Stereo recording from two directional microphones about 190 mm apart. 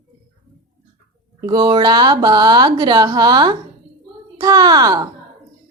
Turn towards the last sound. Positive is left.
turn(degrees=-20)  # may be behind; listen again after turning